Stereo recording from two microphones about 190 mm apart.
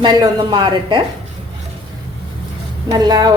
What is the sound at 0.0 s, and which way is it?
A woman's voice, 25° right (ahead or behind).